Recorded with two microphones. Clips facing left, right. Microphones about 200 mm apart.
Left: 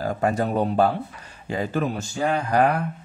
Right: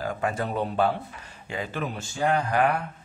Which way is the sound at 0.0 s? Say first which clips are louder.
Left 5 dB; 40° left (ahead or behind).